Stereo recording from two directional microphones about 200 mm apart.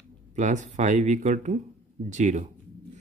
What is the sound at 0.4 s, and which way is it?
Speech, 35° right (ahead or behind).